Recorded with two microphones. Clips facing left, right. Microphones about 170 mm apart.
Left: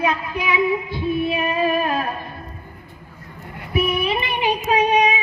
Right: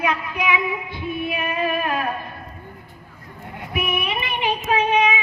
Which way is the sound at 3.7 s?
35° left (ahead or behind).